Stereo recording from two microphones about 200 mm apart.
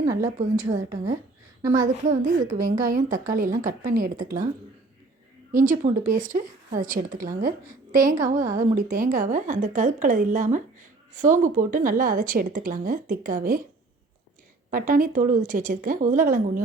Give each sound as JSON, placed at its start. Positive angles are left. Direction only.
{"t": 0.0, "sound": "a sound", "side_deg": -15}
{"t": 0.7, "sound": "a woman's voice", "side_deg": -15}
{"t": 1.9, "sound": "a woman's voice", "side_deg": -40}
{"t": 5.5, "sound": "a woman's voice", "side_deg": -40}
{"t": 14.7, "sound": "a woman's voice", "side_deg": -45}